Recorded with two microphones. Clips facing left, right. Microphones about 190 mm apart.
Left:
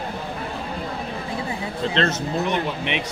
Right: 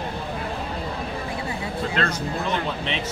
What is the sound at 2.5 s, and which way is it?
Speech, 15° left (ahead or behind).